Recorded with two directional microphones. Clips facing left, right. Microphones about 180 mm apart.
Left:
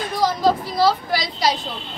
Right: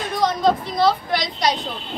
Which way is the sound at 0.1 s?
5° left (ahead or behind).